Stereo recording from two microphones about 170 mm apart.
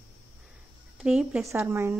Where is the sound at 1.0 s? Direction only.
5° right (ahead or behind).